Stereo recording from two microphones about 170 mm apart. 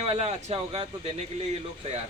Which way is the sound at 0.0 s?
35° right (ahead or behind).